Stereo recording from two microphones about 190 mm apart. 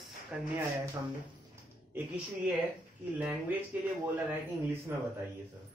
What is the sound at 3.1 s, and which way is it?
Speech, 10° right (ahead or behind).